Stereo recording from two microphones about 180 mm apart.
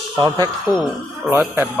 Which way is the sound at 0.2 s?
20° right (ahead or behind).